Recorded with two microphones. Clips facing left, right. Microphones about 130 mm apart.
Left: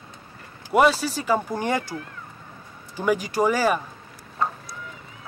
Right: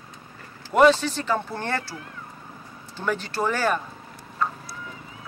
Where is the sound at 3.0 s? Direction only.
10° left (ahead or behind).